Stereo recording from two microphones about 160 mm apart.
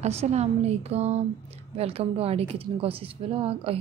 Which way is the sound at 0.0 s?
45° right (ahead or behind).